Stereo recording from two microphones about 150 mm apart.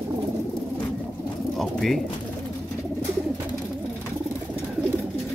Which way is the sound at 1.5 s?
Centre (ahead or behind).